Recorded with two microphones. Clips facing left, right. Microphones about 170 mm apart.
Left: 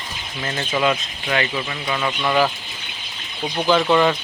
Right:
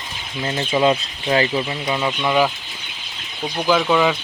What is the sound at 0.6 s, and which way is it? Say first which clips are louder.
Speech: right 3 dB; 25° right (ahead or behind).